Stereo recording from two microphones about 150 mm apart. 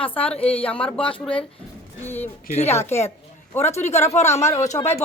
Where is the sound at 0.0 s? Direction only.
35° left (ahead or behind).